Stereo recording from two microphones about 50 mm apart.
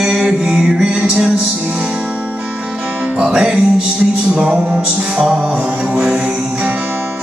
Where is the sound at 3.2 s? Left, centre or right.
Centre.